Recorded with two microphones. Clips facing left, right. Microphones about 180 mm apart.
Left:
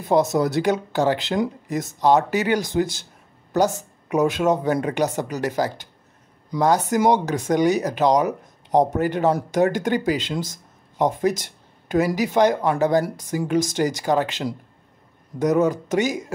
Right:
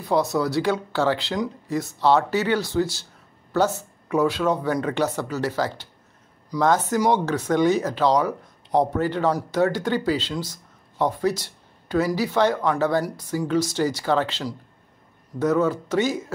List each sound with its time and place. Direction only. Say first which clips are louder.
0.0 s speech: left 3 dB; 20° left (ahead or behind)